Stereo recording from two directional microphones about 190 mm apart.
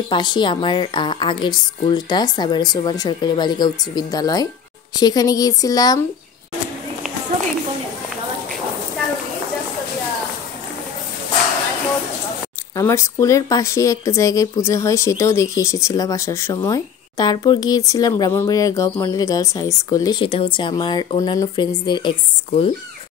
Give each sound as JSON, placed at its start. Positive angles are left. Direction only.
{"t": 0.1, "sound": "a woman's voice", "side_deg": 25}
{"t": 12.7, "sound": "speech", "side_deg": 15}